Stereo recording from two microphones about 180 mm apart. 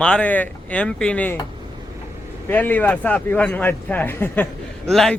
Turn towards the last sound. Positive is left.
turn(degrees=0)  # may be behind; listen again after turning